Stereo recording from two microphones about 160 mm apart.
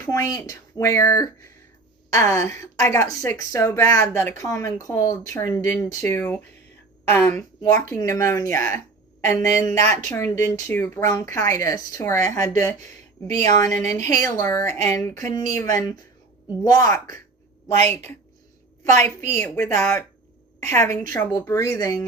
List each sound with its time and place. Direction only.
0.0 s a woman's voice: 20° left (ahead or behind)
19.0 s a woman's voice: 15° left (ahead or behind)